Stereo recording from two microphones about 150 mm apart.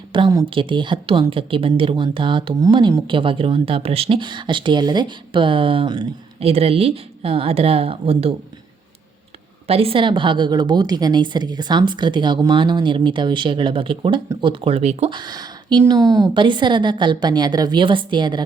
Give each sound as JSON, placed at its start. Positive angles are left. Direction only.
{"t": 0.1, "sound": "speech", "side_deg": -30}
{"t": 9.6, "sound": "speech", "side_deg": -40}
{"t": 15.1, "sound": "speech", "side_deg": -25}